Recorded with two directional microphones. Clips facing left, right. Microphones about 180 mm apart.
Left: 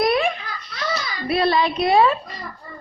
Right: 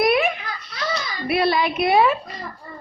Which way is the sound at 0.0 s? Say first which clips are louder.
Right 1 dB; 20° right (ahead or behind).